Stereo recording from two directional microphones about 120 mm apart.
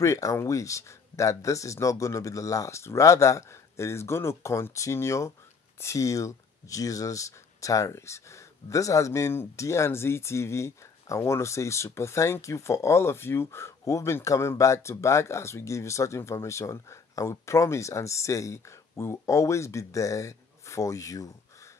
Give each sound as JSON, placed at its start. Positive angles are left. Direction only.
{"t": 0.0, "sound": "speech", "side_deg": 25}